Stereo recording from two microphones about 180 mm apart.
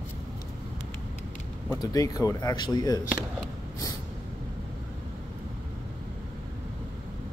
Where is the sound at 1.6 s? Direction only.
20° left (ahead or behind).